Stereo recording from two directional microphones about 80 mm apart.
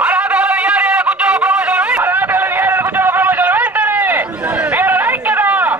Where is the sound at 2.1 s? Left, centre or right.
Right.